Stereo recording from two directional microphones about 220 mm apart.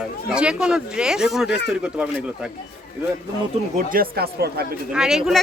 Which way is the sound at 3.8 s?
40° right (ahead or behind).